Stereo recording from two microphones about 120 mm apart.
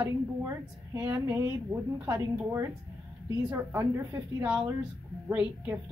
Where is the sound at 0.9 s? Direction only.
15° right (ahead or behind).